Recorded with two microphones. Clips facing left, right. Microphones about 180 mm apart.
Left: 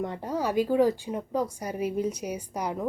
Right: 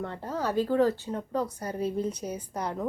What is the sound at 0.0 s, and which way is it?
Speech, 15° left (ahead or behind).